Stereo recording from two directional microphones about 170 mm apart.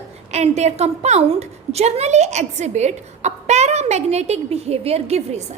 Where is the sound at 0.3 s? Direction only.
40° right (ahead or behind).